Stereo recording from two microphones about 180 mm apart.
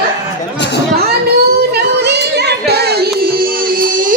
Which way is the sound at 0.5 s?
75° left (ahead or behind).